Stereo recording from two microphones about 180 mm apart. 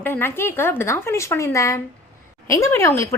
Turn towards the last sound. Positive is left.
turn(degrees=15)  # may be behind; listen again after turning